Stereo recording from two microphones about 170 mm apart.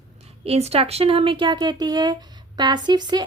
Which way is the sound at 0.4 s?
35° right (ahead or behind).